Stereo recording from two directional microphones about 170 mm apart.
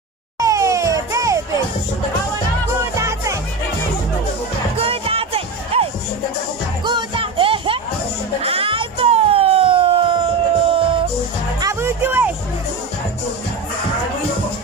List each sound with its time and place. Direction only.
0.4 s music: 20° right (ahead or behind)
3.0 s music: 15° right (ahead or behind)
4.7 s music: 35° right (ahead or behind)
11.6 s music: 15° right (ahead or behind)